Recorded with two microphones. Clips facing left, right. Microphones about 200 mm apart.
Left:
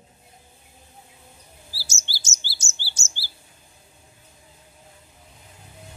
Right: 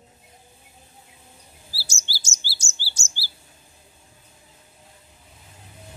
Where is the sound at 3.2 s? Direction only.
15° left (ahead or behind).